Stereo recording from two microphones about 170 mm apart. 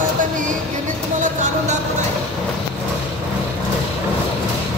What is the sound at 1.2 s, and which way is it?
Speech, 45° right (ahead or behind).